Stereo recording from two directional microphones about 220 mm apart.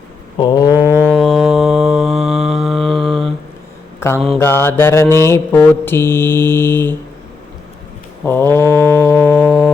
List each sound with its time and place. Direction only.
0.3 s a sound: 20° left (ahead or behind)
1.1 s mantra: centre (ahead or behind)
4.0 s mantra: 10° left (ahead or behind)
8.2 s mantra: 10° left (ahead or behind)